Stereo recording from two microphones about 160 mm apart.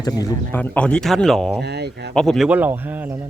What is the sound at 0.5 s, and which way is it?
Speech, 10° left (ahead or behind).